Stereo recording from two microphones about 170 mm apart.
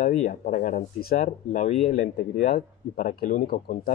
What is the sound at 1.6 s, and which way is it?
Speech, 40° left (ahead or behind).